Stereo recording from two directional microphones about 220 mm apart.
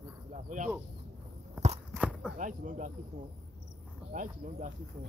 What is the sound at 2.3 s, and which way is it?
Speech, 35° right (ahead or behind).